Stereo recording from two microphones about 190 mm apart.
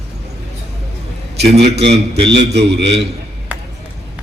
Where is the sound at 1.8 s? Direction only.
65° right (ahead or behind).